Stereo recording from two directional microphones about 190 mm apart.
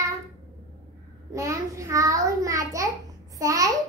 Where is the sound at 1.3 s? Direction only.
15° right (ahead or behind).